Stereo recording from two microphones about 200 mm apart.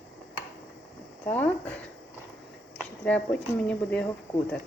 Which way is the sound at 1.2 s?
5° left (ahead or behind).